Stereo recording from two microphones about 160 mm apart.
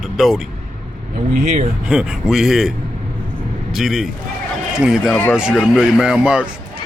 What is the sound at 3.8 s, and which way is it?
Speech, centre (ahead or behind).